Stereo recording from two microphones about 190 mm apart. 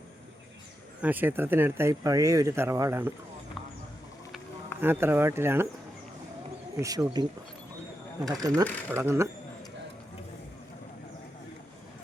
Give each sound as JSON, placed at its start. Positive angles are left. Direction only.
{"t": 1.0, "sound": "speech", "side_deg": -10}
{"t": 4.8, "sound": "speech", "side_deg": -10}
{"t": 6.7, "sound": "speech", "side_deg": -15}
{"t": 8.3, "sound": "speech", "side_deg": -20}